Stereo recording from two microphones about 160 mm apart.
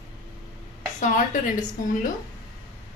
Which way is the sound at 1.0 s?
50° left (ahead or behind).